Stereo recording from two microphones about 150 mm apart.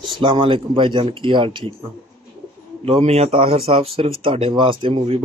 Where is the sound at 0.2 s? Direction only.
35° right (ahead or behind).